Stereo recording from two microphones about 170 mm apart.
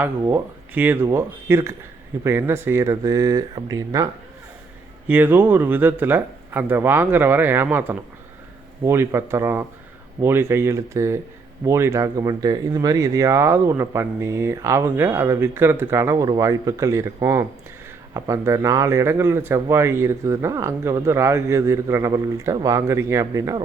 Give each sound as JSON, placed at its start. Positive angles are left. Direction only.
{"t": 0.0, "sound": "speech", "side_deg": -10}